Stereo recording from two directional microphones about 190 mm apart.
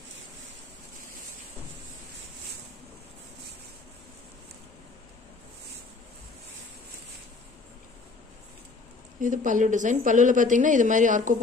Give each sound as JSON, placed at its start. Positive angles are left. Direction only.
{"t": 9.2, "sound": "a woman's voice", "side_deg": -45}